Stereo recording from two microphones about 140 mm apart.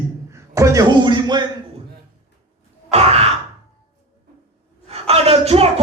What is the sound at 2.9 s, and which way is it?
Sigh, 45° right (ahead or behind).